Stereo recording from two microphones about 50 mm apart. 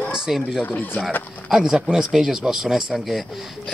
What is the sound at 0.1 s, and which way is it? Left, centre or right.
Fowl, centre.